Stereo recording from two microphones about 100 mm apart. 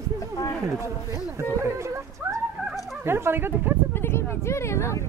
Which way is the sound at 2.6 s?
Centre (ahead or behind).